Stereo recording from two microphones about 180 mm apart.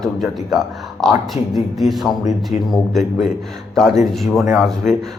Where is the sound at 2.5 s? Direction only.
40° left (ahead or behind).